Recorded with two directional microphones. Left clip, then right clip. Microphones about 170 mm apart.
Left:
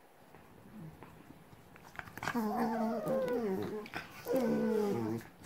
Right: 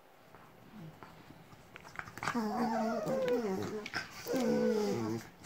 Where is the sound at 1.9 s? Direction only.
20° left (ahead or behind).